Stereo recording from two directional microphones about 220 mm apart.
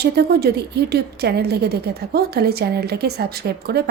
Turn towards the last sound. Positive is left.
turn(degrees=-45)  # may be behind; listen again after turning